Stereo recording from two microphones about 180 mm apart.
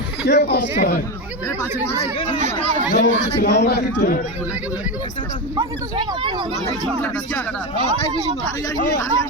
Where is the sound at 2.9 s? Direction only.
45° left (ahead or behind).